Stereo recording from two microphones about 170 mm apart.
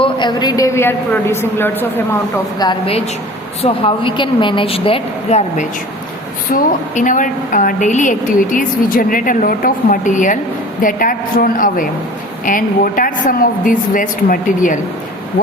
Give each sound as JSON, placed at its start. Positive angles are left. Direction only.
{"t": 0.0, "sound": "a woman's voice", "side_deg": 25}
{"t": 2.6, "sound": "a woman's voice", "side_deg": 30}
{"t": 6.5, "sound": "a woman's voice", "side_deg": 50}